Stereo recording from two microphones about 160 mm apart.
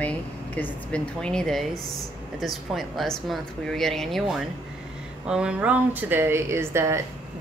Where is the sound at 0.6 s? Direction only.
5° left (ahead or behind).